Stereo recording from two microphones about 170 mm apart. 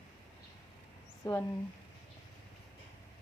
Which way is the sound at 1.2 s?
15° left (ahead or behind).